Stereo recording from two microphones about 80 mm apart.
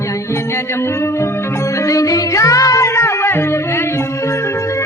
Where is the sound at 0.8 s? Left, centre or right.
Left.